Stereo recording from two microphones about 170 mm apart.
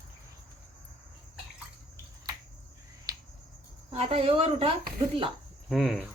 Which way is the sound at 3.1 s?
20° right (ahead or behind).